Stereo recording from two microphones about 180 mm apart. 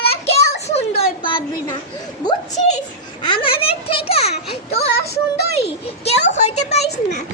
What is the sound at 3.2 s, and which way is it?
A child's voice, 25° left (ahead or behind).